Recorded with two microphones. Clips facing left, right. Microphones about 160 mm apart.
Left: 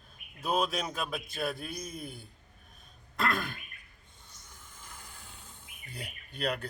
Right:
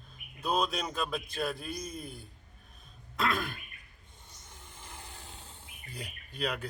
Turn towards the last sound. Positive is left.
turn(degrees=0)  # may be behind; listen again after turning